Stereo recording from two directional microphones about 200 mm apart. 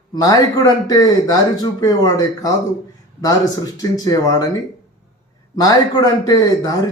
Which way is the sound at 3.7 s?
20° left (ahead or behind).